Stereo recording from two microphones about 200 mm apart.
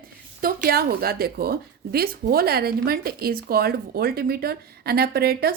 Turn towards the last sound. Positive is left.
turn(degrees=-50)  # may be behind; listen again after turning